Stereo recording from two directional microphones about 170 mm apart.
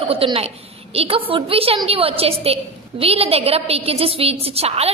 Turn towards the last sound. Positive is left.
turn(degrees=-35)  # may be behind; listen again after turning